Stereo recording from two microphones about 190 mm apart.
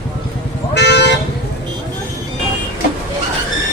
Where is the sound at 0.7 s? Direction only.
60° left (ahead or behind).